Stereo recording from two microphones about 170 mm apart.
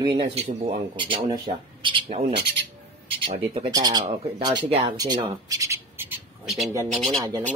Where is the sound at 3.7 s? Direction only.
25° right (ahead or behind).